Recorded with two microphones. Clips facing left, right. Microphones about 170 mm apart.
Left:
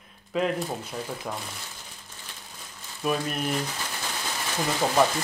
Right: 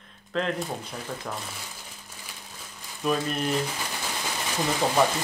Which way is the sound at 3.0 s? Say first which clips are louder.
Right 1 dB; 5° left (ahead or behind).